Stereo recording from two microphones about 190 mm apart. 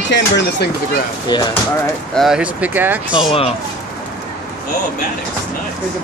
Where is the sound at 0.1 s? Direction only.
65° left (ahead or behind).